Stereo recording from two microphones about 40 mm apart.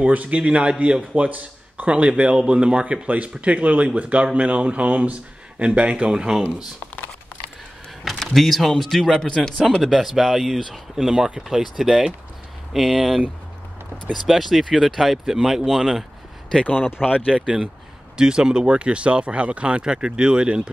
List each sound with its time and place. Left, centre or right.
0.0 s speech: right
8.0 s speech: centre
9.3 s speech: centre
9.8 s speech: centre
12.9 s speech: centre
14.2 s speech: centre
16.6 s speech: left
17.4 s speech: centre